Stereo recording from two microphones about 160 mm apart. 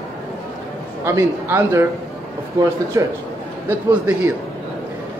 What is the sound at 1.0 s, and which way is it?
Speech, 15° right (ahead or behind).